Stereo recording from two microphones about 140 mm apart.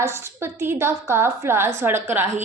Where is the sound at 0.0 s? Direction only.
20° right (ahead or behind).